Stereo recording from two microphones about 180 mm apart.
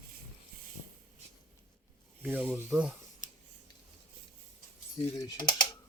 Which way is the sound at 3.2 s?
45° left (ahead or behind).